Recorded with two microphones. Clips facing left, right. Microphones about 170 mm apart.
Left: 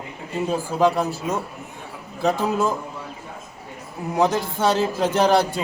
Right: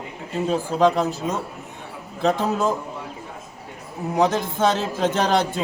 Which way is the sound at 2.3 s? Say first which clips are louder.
Even; 20° right (ahead or behind).